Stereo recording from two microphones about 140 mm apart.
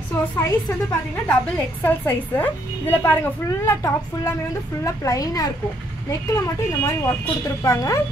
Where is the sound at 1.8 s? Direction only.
15° left (ahead or behind).